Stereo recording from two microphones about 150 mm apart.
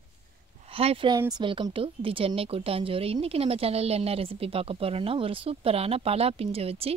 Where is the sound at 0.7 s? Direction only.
40° right (ahead or behind).